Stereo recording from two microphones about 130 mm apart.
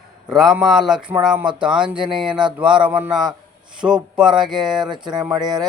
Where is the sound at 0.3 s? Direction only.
5° right (ahead or behind).